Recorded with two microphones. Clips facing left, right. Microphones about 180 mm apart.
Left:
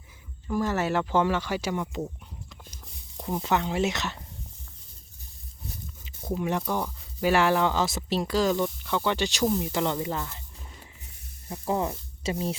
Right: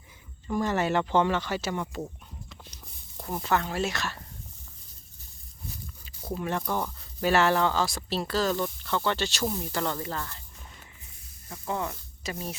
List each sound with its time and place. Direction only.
0.4 s speech: 5° left (ahead or behind)
3.2 s speech: 15° left (ahead or behind)
6.3 s speech: 15° left (ahead or behind)
11.4 s speech: 30° left (ahead or behind)